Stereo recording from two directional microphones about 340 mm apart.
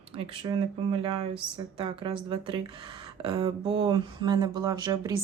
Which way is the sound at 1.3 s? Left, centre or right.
Centre.